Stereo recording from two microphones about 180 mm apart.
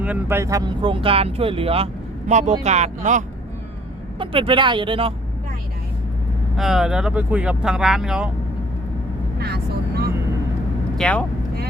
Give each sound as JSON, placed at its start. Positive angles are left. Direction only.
{"t": 0.0, "sound": "speech", "side_deg": -10}
{"t": 4.2, "sound": "speech", "side_deg": -30}
{"t": 6.6, "sound": "speech", "side_deg": 0}
{"t": 9.4, "sound": "vehicle", "side_deg": -60}
{"t": 10.9, "sound": "speech", "side_deg": 5}